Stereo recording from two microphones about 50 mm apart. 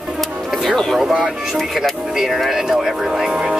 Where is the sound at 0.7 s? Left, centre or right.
Centre.